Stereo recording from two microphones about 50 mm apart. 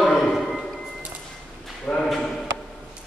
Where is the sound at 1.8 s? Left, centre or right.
Centre.